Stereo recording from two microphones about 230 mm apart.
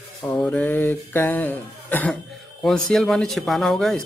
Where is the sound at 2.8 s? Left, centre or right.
Centre.